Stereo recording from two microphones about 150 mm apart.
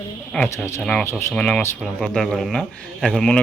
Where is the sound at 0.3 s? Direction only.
15° left (ahead or behind).